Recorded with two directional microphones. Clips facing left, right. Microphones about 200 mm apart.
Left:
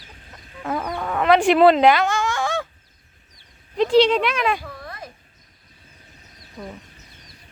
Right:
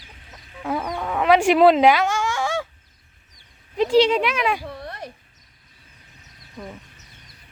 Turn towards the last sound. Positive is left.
turn(degrees=10)  # may be behind; listen again after turning